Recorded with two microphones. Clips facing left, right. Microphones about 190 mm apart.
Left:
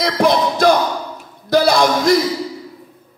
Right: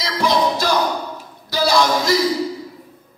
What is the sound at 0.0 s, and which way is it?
Music, 55° left (ahead or behind).